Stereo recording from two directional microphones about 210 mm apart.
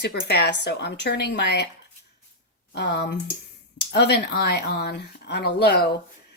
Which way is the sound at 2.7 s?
50° left (ahead or behind).